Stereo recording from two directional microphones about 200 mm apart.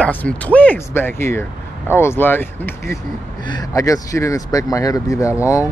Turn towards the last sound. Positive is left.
turn(degrees=15)  # may be behind; listen again after turning